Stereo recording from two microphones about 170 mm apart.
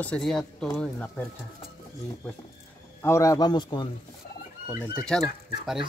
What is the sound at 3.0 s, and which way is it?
Speech, 15° left (ahead or behind).